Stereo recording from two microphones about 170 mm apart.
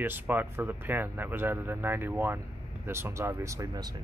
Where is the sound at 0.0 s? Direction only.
10° right (ahead or behind).